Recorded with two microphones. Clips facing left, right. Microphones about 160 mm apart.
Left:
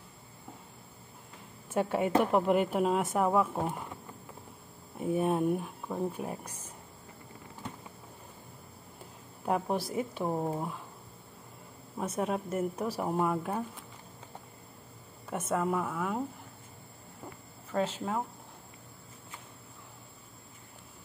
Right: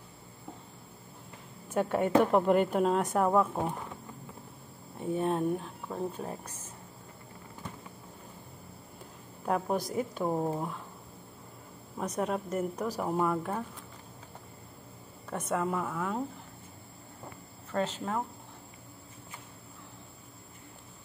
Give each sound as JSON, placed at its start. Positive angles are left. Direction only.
{"t": 1.7, "sound": "a woman's voice", "side_deg": 5}
{"t": 5.0, "sound": "speech", "side_deg": 10}
{"t": 9.5, "sound": "a woman's voice", "side_deg": 5}
{"t": 12.0, "sound": "speech", "side_deg": 5}
{"t": 15.2, "sound": "a woman's voice", "side_deg": 5}
{"t": 17.6, "sound": "speech", "side_deg": 10}